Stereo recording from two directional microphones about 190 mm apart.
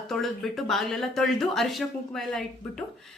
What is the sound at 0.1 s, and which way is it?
Speech, centre (ahead or behind).